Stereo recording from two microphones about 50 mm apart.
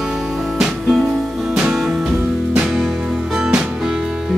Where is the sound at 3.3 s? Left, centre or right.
Centre.